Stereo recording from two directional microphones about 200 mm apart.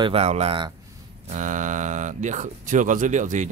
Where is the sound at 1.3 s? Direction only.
40° right (ahead or behind).